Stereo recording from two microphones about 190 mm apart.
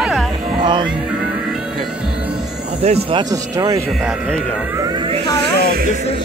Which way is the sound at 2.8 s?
35° right (ahead or behind).